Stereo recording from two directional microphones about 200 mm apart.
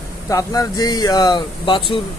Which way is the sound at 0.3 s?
15° left (ahead or behind).